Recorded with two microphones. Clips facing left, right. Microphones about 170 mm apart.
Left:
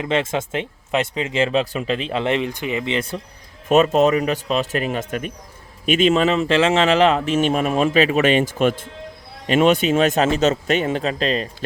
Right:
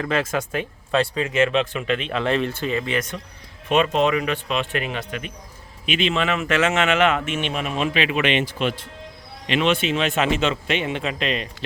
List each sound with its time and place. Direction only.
0.0 s speech: 25° left (ahead or behind)
2.2 s speech: 15° left (ahead or behind)
3.7 s speech: 40° left (ahead or behind)